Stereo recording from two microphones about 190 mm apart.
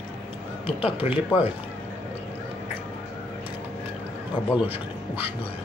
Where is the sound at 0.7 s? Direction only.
30° left (ahead or behind).